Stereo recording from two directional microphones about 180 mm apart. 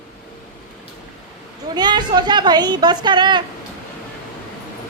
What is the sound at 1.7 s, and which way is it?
A woman's voice, 25° right (ahead or behind).